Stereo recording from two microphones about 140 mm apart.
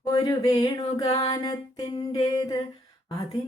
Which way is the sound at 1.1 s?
25° left (ahead or behind).